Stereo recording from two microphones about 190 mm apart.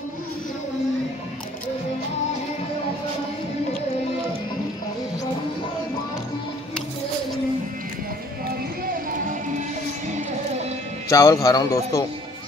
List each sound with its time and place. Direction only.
11.1 s speech: 15° left (ahead or behind)